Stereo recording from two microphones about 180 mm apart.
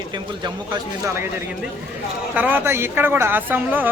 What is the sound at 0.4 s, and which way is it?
Speech, 25° right (ahead or behind).